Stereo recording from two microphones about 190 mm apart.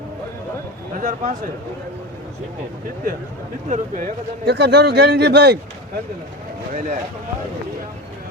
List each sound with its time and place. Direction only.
0.9 s a man's voice: 40° right (ahead or behind)
3.7 s speech: 45° right (ahead or behind)
4.4 s a man's voice: 60° right (ahead or behind)
6.7 s speech: 45° right (ahead or behind)